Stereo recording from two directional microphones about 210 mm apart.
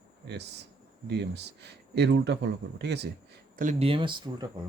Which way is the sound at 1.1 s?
55° right (ahead or behind).